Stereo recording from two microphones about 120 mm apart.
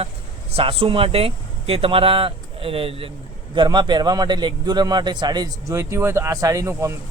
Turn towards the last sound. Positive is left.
turn(degrees=-20)  # may be behind; listen again after turning